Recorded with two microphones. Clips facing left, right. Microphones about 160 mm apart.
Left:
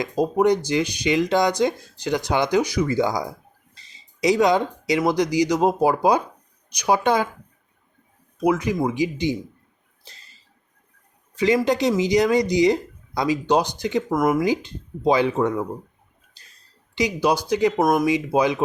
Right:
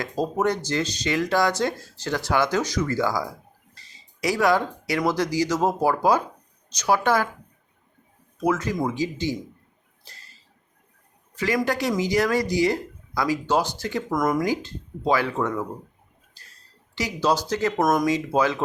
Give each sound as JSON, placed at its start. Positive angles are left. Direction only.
{"t": 0.0, "sound": "speech", "side_deg": 15}
{"t": 8.4, "sound": "speech", "side_deg": 15}
{"t": 10.0, "sound": "a sound", "side_deg": 20}
{"t": 11.3, "sound": "speech", "side_deg": 20}
{"t": 14.1, "sound": "speech", "side_deg": 5}
{"t": 14.4, "sound": "speech", "side_deg": 20}
{"t": 16.4, "sound": "a sound", "side_deg": 20}
{"t": 16.9, "sound": "speech", "side_deg": 15}